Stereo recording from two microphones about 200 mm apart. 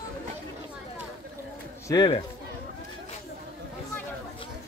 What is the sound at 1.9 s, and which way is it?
Speech, 25° left (ahead or behind).